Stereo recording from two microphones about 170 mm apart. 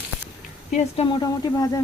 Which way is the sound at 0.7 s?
45° left (ahead or behind).